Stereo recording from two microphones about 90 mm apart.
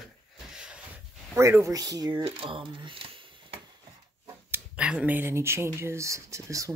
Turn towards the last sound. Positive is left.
turn(degrees=-35)  # may be behind; listen again after turning